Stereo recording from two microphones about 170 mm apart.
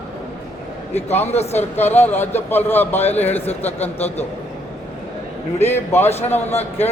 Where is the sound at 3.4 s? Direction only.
35° left (ahead or behind).